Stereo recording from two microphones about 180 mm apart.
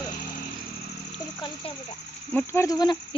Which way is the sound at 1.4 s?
30° left (ahead or behind).